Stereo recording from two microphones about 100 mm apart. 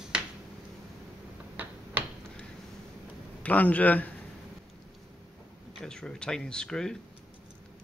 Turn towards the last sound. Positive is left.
turn(degrees=5)  # may be behind; listen again after turning